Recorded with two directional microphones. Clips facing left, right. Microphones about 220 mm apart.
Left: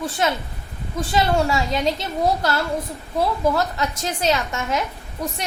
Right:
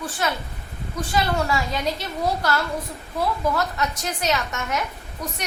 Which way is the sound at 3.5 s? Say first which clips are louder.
Left 2 dB; 25° left (ahead or behind).